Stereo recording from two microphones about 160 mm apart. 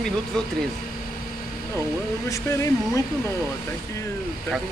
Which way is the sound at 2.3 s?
20° left (ahead or behind).